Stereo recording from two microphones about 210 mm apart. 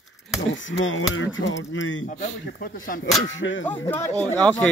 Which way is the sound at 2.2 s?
40° left (ahead or behind).